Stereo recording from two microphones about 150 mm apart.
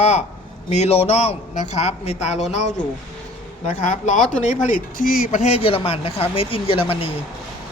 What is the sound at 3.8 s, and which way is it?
Speech, 60° left (ahead or behind).